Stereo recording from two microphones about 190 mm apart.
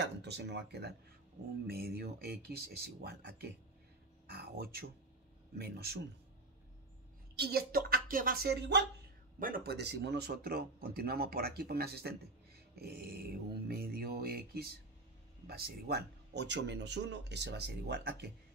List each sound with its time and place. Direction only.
0.0 s speech: 65° right (ahead or behind)
7.3 s speech: 55° right (ahead or behind)
9.4 s speech: 50° right (ahead or behind)